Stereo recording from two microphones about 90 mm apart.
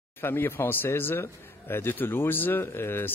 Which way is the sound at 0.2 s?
25° left (ahead or behind).